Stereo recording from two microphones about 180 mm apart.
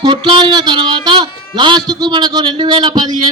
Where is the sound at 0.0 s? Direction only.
25° right (ahead or behind).